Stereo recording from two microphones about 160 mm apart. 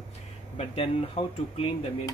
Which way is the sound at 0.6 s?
40° left (ahead or behind).